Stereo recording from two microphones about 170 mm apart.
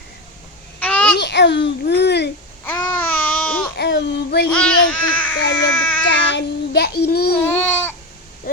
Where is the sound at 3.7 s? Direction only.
85° left.